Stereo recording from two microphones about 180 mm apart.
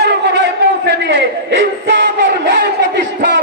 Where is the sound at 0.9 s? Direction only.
80° right.